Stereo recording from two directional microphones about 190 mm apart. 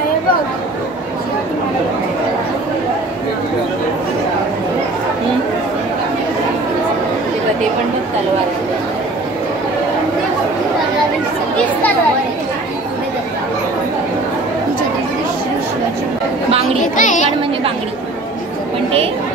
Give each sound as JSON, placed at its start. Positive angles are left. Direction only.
{"t": 16.8, "sound": "speech", "side_deg": 40}